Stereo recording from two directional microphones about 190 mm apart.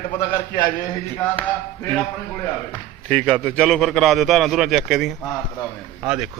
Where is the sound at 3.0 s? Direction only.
5° left (ahead or behind).